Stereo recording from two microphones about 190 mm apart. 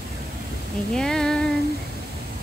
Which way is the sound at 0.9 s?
5° left (ahead or behind).